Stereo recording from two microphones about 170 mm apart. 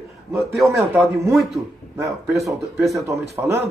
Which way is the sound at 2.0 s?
20° right (ahead or behind).